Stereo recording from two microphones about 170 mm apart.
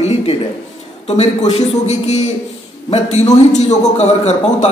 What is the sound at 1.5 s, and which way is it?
A man's voice, 40° left (ahead or behind).